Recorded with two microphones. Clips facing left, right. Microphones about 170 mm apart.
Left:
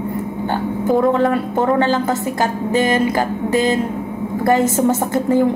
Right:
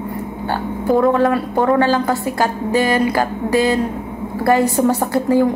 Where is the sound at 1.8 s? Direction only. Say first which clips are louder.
Right 1 dB; 20° left (ahead or behind).